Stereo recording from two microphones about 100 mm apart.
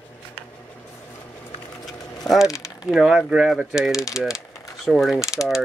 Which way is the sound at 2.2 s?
5° right (ahead or behind).